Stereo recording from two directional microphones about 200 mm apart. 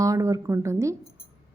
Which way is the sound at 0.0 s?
15° right (ahead or behind).